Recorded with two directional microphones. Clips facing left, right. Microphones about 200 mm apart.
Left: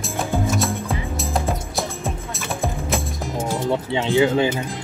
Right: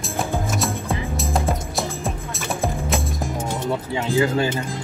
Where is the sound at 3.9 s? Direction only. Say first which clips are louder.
Left 3 dB; 25° left (ahead or behind).